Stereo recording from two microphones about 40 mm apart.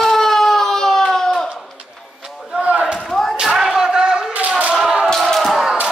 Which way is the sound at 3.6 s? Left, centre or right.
Centre.